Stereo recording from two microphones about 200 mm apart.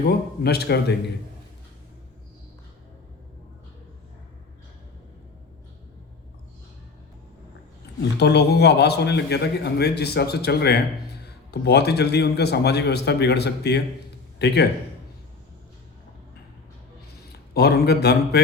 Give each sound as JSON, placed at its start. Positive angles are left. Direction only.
{"t": 0.0, "sound": "a man's voice", "side_deg": 55}
{"t": 8.2, "sound": "a man's voice", "side_deg": 55}
{"t": 17.5, "sound": "a man's voice", "side_deg": 55}